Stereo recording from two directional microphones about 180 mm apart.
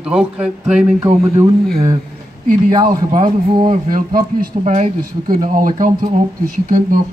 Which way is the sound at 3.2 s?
30° right (ahead or behind).